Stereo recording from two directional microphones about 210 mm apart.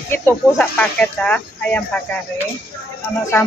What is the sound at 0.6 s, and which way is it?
Speech, 5° left (ahead or behind).